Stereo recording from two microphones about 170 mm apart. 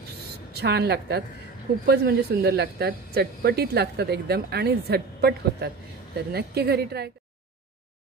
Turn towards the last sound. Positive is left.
turn(degrees=-70)  # may be behind; listen again after turning